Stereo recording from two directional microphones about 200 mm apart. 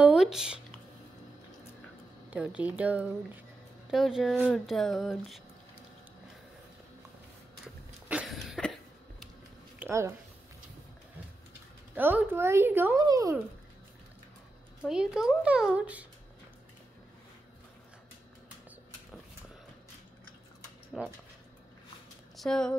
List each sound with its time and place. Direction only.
0.0 s a sound: 5° right (ahead or behind)
2.3 s a woman's voice: 5° right (ahead or behind)
7.6 s a sound: 5° right (ahead or behind)
9.8 s speech: 15° right (ahead or behind)
11.9 s a woman's voice: 10° right (ahead or behind)
14.9 s speech: 5° right (ahead or behind)
20.9 s speech: centre (ahead or behind)
22.4 s speech: 5° left (ahead or behind)